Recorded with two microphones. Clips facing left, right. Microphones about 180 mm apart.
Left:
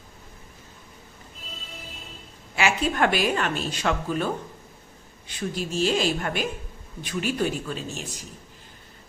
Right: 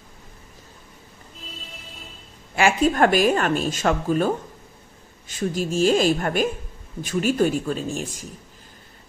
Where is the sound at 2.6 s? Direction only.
45° right (ahead or behind).